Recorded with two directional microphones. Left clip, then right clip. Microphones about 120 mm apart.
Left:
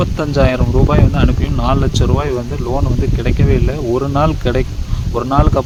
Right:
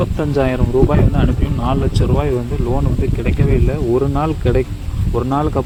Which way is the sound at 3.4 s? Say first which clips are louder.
Even; 30° left (ahead or behind).